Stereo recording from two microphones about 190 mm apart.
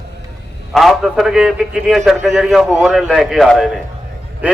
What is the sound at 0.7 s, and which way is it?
A man's voice, centre (ahead or behind).